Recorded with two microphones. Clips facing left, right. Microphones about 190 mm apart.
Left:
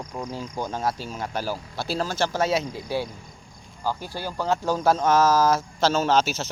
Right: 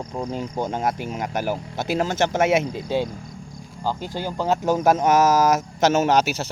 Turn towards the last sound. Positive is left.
turn(degrees=-15)  # may be behind; listen again after turning